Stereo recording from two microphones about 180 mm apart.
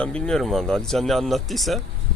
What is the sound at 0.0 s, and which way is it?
Speech, 5° left (ahead or behind).